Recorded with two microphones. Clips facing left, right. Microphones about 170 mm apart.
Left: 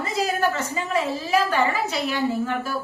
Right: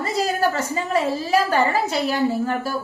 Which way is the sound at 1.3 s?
35° right (ahead or behind).